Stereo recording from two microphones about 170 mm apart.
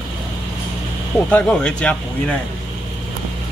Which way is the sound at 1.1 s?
5° left (ahead or behind).